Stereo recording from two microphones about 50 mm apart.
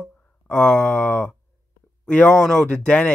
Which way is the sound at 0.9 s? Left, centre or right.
Left.